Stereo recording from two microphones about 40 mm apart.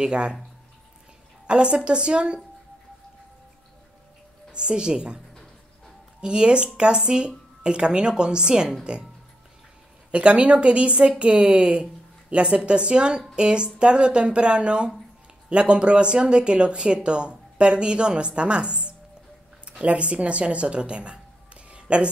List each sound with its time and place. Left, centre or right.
0.0 s speech: right
1.5 s speech: right
4.5 s speech: right
5.3 s music: centre
6.2 s speech: right
10.1 s a woman's voice: right
21.6 s a sound: right